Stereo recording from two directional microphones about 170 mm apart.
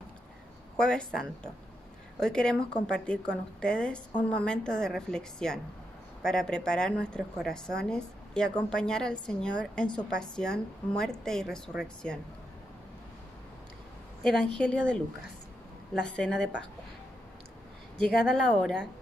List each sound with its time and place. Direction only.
0.7 s a woman's voice: 5° left (ahead or behind)
14.2 s a woman's voice: 5° left (ahead or behind)
17.9 s a woman's voice: 5° left (ahead or behind)